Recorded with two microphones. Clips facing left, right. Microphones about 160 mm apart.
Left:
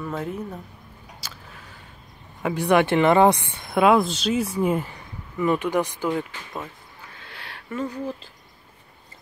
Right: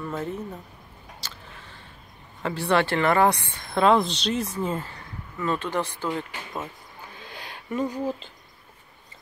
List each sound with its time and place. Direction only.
0.0 s speech: centre (ahead or behind)
2.4 s speech: 15° left (ahead or behind)
7.2 s a sound: 20° right (ahead or behind)